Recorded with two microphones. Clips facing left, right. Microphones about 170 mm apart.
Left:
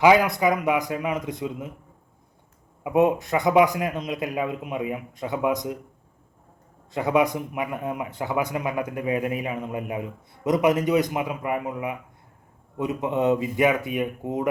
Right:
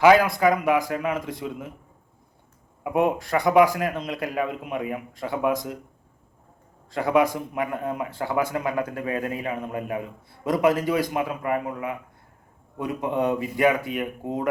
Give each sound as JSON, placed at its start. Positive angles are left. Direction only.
{"t": 0.0, "sound": "speech", "side_deg": 20}
{"t": 2.8, "sound": "speech", "side_deg": 20}
{"t": 6.9, "sound": "speech", "side_deg": 20}